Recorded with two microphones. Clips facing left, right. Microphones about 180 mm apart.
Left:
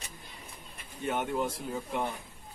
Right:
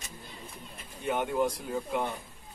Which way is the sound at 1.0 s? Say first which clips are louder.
Right 3 dB; centre (ahead or behind).